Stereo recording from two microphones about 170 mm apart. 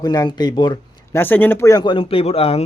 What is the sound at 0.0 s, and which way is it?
Speech, 25° left (ahead or behind).